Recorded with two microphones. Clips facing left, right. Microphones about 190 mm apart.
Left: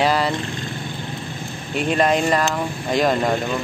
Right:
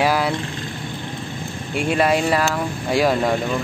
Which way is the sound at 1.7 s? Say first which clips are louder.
Even; 10° right (ahead or behind).